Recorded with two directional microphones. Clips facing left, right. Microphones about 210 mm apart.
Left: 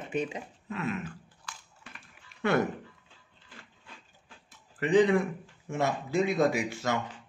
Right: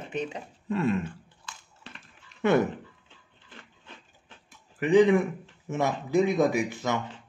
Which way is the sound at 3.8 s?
20° right (ahead or behind).